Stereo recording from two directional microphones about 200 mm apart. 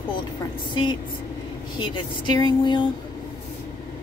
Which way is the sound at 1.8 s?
20° left (ahead or behind).